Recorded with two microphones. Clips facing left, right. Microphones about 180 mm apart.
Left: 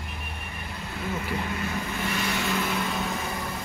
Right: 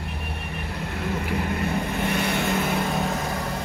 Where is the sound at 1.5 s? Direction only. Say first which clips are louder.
Right 5 dB; 60° right (ahead or behind).